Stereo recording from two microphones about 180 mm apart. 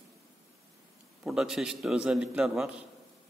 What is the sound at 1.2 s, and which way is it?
A man's voice, 5° right (ahead or behind).